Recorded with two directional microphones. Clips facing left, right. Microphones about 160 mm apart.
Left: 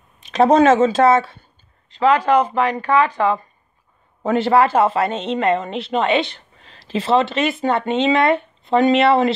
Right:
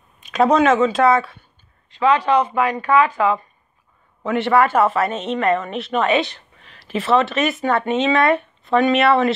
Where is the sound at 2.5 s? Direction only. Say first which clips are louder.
Even; 30° left (ahead or behind).